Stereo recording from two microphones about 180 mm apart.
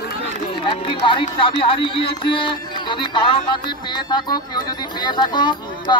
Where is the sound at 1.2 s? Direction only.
30° left (ahead or behind).